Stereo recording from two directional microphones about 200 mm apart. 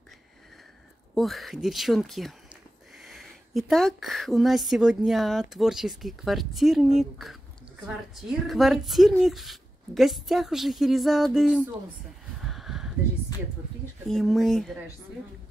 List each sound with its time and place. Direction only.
1.1 s speech: centre (ahead or behind)
12.4 s a sound: centre (ahead or behind)
14.0 s speech: centre (ahead or behind)